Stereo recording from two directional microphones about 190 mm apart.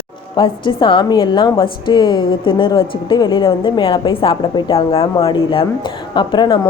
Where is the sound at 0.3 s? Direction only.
25° left (ahead or behind).